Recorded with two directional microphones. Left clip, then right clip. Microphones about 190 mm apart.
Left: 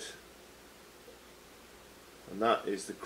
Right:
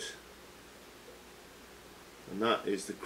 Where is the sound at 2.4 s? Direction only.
20° right (ahead or behind).